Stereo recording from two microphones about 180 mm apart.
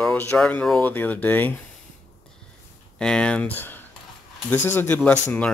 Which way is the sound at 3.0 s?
5° left (ahead or behind).